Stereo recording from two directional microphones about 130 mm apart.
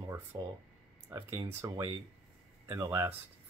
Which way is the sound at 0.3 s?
30° right (ahead or behind).